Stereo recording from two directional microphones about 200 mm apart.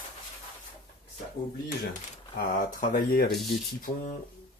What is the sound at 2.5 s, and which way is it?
Speech, 45° left (ahead or behind).